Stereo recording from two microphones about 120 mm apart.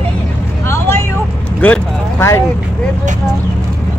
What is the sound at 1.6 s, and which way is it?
Speech, 20° left (ahead or behind).